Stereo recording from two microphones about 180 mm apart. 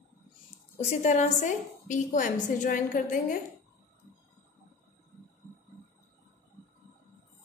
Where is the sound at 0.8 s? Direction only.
40° left (ahead or behind).